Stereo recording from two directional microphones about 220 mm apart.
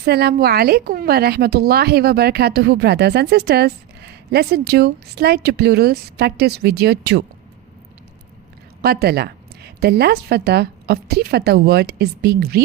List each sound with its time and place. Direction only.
0.0 s speech: 45° right (ahead or behind)
8.8 s speech: 45° right (ahead or behind)